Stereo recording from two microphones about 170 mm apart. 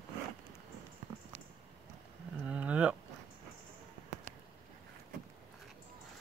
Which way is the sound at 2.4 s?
5° right (ahead or behind).